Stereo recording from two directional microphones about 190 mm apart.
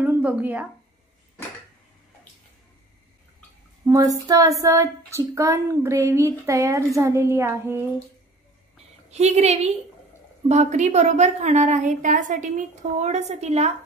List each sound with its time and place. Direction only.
0.0 s a sound: 10° right (ahead or behind)
3.8 s speech: 15° right (ahead or behind)
9.1 s a woman's voice: 35° right (ahead or behind)